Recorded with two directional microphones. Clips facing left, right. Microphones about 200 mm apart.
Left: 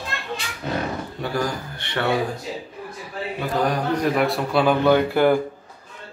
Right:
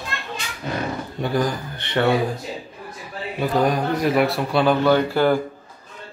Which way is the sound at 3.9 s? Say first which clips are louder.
Right 1 dB; 5° right (ahead or behind).